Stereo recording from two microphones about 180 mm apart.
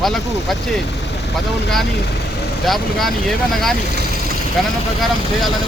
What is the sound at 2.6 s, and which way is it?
Speech, centre (ahead or behind).